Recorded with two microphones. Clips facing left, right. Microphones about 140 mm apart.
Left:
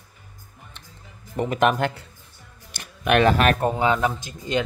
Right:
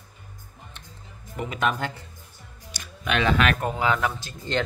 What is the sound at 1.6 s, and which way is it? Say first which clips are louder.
Speech: left 5 dB; 60° left (ahead or behind).